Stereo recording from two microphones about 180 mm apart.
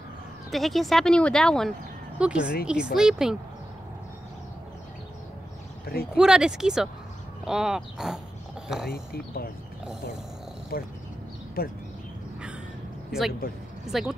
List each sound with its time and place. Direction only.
0.5 s speech: centre (ahead or behind)
6.1 s speech: 5° right (ahead or behind)
8.9 s speech: 55° left (ahead or behind)
10.7 s speech: 55° left (ahead or behind)
13.8 s speech: centre (ahead or behind)